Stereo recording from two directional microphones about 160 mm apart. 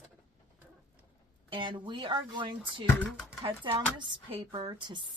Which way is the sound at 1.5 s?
30° right (ahead or behind).